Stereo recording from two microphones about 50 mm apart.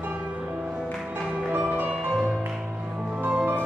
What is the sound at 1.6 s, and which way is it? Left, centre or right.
Music, right.